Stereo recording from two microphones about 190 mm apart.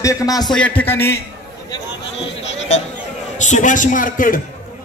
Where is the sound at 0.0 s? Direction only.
15° left (ahead or behind).